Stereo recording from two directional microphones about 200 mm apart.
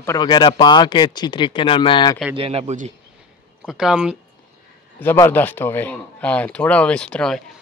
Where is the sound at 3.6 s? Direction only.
Centre (ahead or behind).